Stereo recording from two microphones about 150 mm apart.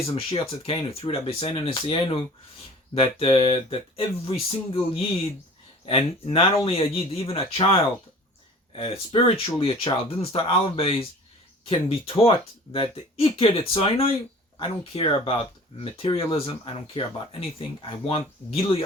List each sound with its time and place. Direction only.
0.1 s speech: 40° left (ahead or behind)